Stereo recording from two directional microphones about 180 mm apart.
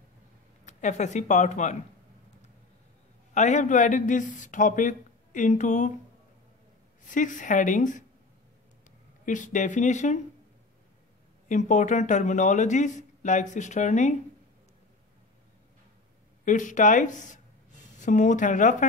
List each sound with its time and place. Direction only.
0.7 s speech: 40° left (ahead or behind)
3.3 s speech: 40° left (ahead or behind)
7.1 s speech: 45° left (ahead or behind)
9.2 s speech: 45° left (ahead or behind)
11.4 s speech: 40° left (ahead or behind)
16.4 s speech: 45° left (ahead or behind)